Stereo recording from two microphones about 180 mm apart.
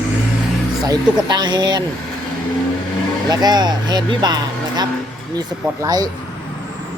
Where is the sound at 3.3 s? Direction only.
25° right (ahead or behind).